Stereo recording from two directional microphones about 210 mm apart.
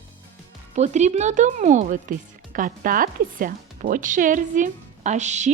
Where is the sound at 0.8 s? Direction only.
35° right (ahead or behind).